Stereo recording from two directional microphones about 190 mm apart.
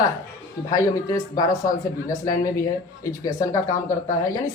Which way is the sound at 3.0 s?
15° left (ahead or behind).